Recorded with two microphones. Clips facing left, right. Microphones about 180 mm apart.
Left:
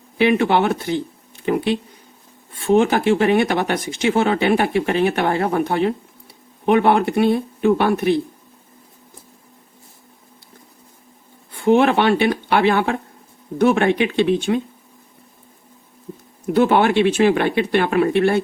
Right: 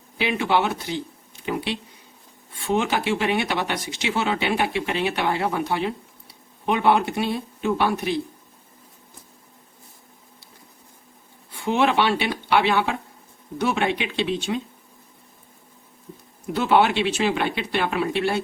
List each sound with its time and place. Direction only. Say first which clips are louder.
0.2 s speech: left 6 dB; 55° left (ahead or behind)
11.6 s speech: left 6 dB; 55° left (ahead or behind)
16.5 s speech: left 4 dB; 50° left (ahead or behind)